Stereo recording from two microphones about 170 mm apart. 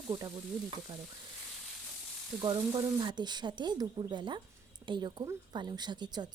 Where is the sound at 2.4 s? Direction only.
30° right (ahead or behind).